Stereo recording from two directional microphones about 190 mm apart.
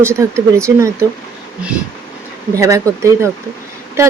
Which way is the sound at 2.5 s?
15° right (ahead or behind).